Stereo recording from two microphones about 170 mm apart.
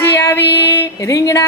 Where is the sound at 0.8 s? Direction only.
20° left (ahead or behind).